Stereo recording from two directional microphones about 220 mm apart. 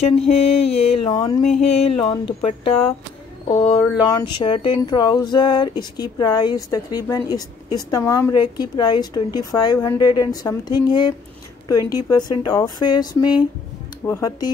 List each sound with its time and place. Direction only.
0.3 s speech: 25° left (ahead or behind)
3.7 s speech: centre (ahead or behind)
4.1 s speech: 20° left (ahead or behind)